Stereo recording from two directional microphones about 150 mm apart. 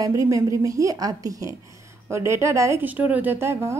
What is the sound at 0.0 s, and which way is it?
A woman's voice, 20° right (ahead or behind).